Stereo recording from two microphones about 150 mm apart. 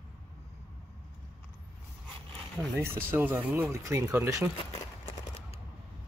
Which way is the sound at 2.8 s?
15° right (ahead or behind).